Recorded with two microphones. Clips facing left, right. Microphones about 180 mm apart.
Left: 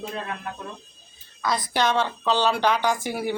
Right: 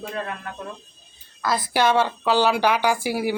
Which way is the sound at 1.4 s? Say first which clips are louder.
Right 2 dB; 5° right (ahead or behind).